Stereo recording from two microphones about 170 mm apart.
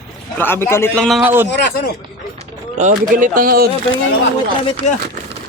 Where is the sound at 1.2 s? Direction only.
10° right (ahead or behind).